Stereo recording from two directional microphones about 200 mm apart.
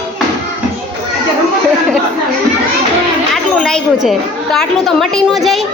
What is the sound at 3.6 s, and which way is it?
A woman's voice, 5° left (ahead or behind).